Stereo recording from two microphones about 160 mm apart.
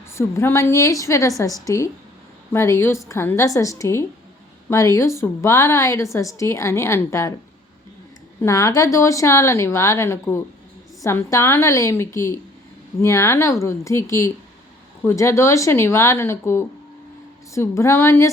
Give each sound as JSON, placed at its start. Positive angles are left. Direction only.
{"t": 0.1, "sound": "a woman's voice", "side_deg": 15}
{"t": 8.4, "sound": "a woman's voice", "side_deg": 20}